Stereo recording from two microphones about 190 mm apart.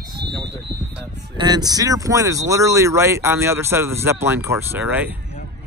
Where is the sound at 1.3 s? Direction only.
20° right (ahead or behind).